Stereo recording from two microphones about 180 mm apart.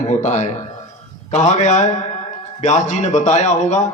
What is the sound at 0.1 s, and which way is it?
A man's voice, 40° left (ahead or behind).